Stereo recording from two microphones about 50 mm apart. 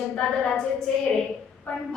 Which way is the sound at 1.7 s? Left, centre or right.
Left.